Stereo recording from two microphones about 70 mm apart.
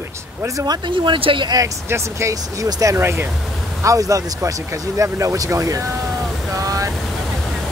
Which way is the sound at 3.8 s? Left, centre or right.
Right.